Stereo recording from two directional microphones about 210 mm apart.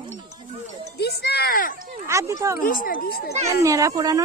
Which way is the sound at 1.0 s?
50° left (ahead or behind).